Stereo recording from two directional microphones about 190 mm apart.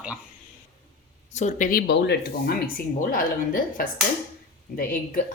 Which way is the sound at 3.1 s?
45° left (ahead or behind).